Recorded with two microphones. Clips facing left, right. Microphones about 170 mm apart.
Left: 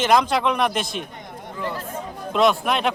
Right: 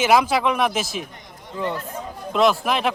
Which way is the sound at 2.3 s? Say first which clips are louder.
Even; centre (ahead or behind).